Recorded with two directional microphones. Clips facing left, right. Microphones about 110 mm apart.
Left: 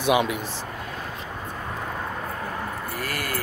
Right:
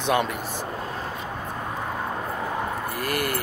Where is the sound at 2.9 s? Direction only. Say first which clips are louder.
Right 4 dB; 20° right (ahead or behind).